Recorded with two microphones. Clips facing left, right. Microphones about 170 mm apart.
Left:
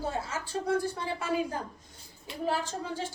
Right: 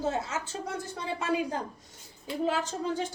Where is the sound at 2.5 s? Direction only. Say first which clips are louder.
Even; 20° right (ahead or behind).